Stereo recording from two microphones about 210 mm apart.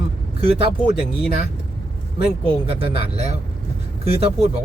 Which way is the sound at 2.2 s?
25° right (ahead or behind).